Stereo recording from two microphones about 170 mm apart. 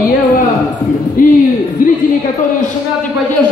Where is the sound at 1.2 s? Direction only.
55° left (ahead or behind).